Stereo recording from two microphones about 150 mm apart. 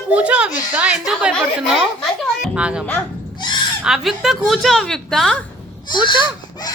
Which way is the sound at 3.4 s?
30° left (ahead or behind).